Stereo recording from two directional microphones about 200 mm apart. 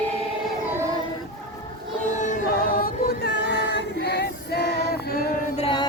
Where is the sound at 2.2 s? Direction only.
40° left (ahead or behind); by 4.6 s 60° left (ahead or behind).